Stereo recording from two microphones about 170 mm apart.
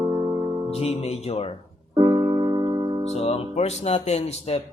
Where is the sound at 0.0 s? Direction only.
25° right (ahead or behind).